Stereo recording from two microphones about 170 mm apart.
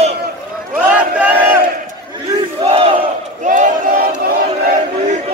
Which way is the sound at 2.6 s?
35° right (ahead or behind).